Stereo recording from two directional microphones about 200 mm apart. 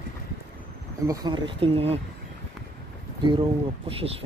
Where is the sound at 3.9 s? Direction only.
30° right (ahead or behind).